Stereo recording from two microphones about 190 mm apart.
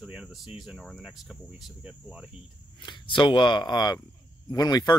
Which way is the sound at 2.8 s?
25° left (ahead or behind).